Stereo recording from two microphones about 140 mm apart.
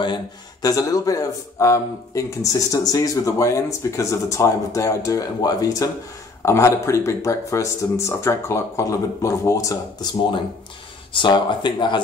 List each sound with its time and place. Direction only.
0.0 s speech: 30° left (ahead or behind)